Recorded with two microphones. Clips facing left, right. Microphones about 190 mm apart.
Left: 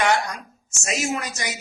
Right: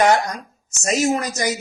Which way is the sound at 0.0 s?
40° right (ahead or behind).